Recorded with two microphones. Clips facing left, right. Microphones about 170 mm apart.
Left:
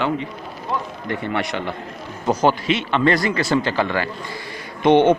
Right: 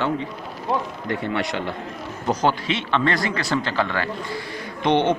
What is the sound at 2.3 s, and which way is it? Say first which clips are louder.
A man's voice: left 4 dB; 10° left (ahead or behind).